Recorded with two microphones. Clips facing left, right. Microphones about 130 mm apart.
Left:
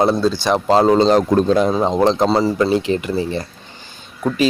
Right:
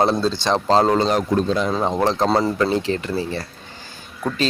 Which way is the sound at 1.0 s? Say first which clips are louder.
Left 6 dB; 30° left (ahead or behind).